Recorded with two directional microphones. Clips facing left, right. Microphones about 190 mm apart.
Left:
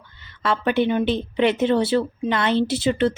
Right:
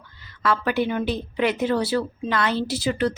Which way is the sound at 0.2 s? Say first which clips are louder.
Even; 25° left (ahead or behind).